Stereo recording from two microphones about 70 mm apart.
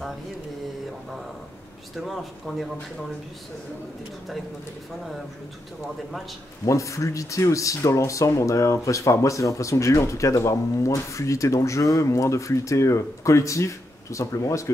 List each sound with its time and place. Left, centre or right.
2.0 s speech: centre
6.6 s speech: left